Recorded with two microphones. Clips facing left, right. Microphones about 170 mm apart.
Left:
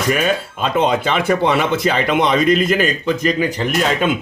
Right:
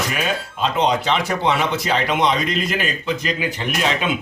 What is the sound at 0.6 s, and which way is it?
Speech, 55° left (ahead or behind).